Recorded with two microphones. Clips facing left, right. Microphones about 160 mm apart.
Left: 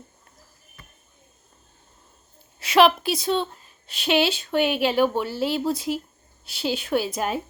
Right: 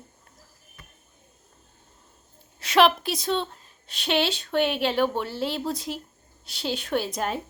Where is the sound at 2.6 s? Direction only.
Centre (ahead or behind).